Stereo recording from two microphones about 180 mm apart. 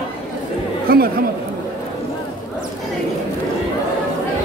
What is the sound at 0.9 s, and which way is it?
Speech, 55° right (ahead or behind).